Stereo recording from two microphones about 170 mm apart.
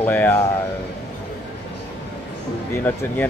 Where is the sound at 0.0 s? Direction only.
10° left (ahead or behind).